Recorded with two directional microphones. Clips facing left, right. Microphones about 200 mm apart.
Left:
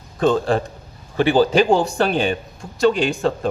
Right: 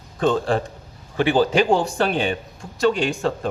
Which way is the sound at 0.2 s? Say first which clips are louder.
Left 2 dB; 40° left (ahead or behind).